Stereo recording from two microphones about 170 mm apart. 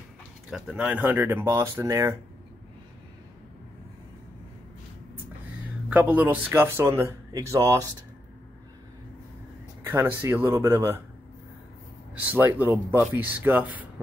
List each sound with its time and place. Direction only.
0.5 s speech: 5° right (ahead or behind)
5.9 s speech: 10° right (ahead or behind)
9.8 s speech: 15° right (ahead or behind)
12.2 s speech: 10° right (ahead or behind)